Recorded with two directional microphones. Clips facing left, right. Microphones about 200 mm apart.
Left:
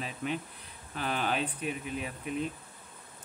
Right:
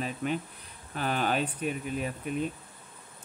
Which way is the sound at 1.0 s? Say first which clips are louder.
Right 3 dB; 45° right (ahead or behind).